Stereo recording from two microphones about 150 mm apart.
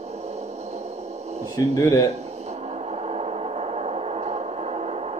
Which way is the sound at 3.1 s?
45° right (ahead or behind).